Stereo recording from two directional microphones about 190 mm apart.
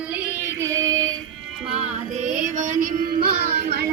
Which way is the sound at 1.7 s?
35° right (ahead or behind).